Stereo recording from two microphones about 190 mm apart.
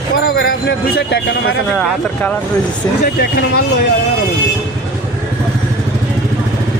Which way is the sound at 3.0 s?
55° left (ahead or behind).